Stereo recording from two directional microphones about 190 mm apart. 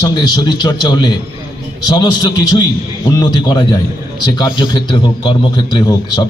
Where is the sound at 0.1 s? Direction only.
20° left (ahead or behind).